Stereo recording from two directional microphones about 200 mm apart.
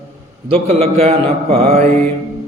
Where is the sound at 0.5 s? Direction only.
30° right (ahead or behind).